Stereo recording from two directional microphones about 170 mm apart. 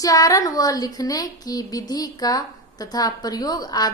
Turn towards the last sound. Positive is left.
turn(degrees=20)  # may be behind; listen again after turning